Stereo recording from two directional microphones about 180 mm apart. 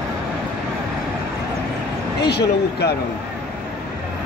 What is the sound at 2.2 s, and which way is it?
Speech, 65° left (ahead or behind).